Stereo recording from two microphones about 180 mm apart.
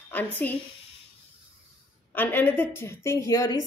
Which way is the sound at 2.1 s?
10° left (ahead or behind).